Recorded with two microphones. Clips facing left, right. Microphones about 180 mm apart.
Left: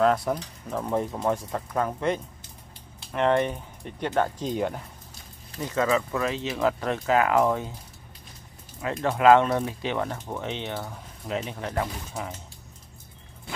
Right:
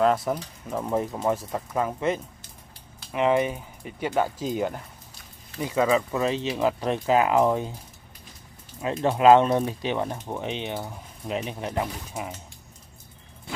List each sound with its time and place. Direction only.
0.0 s speech: centre (ahead or behind)
5.6 s speech: 10° right (ahead or behind)
9.0 s speech: 20° right (ahead or behind)